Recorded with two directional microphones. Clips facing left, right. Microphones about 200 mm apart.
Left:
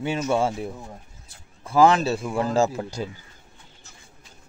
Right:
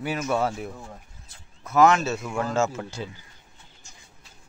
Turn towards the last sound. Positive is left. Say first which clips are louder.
# left 3 dB
turn(degrees=40)  # may be behind; listen again after turning